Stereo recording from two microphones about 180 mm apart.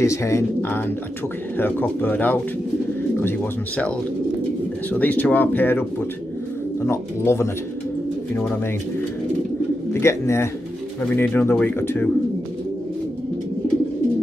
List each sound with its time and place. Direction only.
0.0 s speech: 15° left (ahead or behind)
4.9 s speech: 10° left (ahead or behind)
6.9 s speech: 15° left (ahead or behind)
9.9 s speech: 15° left (ahead or behind)